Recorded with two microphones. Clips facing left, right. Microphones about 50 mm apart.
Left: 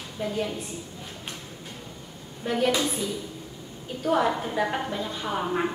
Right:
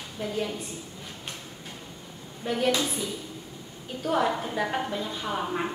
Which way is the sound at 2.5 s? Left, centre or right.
Centre.